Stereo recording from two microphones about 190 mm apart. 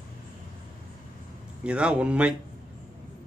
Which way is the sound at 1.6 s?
5° right (ahead or behind).